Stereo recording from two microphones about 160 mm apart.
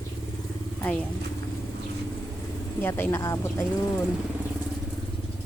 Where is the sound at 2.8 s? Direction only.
15° left (ahead or behind).